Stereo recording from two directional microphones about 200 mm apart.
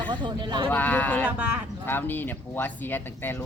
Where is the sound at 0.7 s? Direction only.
10° left (ahead or behind).